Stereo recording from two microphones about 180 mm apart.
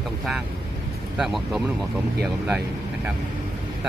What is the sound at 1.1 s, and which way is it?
Speech, 5° right (ahead or behind).